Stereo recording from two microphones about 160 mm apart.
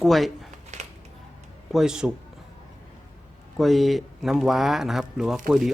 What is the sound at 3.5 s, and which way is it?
Speech, centre (ahead or behind).